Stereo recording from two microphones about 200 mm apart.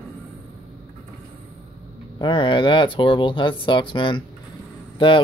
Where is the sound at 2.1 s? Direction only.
25° left (ahead or behind).